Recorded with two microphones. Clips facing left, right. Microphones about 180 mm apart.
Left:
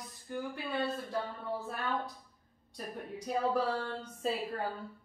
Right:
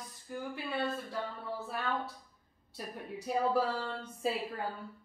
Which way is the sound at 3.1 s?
5° right (ahead or behind).